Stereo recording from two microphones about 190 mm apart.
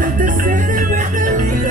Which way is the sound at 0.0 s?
45° right (ahead or behind).